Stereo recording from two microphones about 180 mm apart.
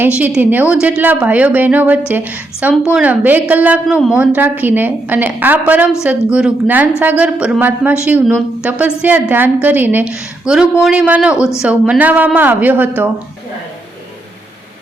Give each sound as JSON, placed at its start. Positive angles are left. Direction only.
{"t": 0.0, "sound": "a woman's voice", "side_deg": -10}